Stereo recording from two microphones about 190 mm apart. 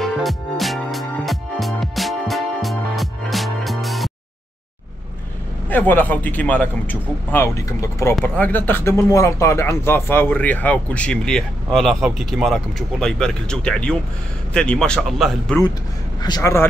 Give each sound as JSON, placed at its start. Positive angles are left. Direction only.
{"t": 0.0, "sound": "music", "side_deg": 0}
{"t": 5.7, "sound": "speech", "side_deg": 10}
{"t": 16.2, "sound": "speech", "side_deg": 20}